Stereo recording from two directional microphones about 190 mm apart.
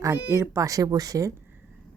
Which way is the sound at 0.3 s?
15° right (ahead or behind).